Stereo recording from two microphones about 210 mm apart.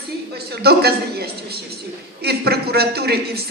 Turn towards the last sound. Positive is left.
turn(degrees=-50)  # may be behind; listen again after turning